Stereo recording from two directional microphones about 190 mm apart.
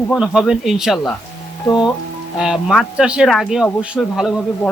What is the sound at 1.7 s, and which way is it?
Speech, 15° left (ahead or behind).